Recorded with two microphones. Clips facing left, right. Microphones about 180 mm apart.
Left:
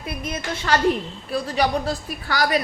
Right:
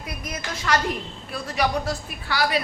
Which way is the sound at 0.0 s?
30° left (ahead or behind).